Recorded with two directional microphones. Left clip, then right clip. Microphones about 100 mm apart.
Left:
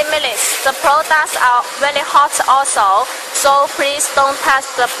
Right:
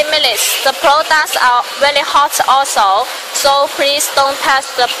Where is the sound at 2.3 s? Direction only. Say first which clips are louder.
Right 2 dB; 15° right (ahead or behind).